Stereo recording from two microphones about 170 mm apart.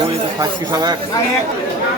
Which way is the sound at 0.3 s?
25° right (ahead or behind).